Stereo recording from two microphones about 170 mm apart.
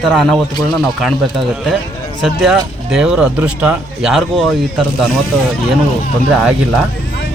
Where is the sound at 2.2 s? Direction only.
5° right (ahead or behind).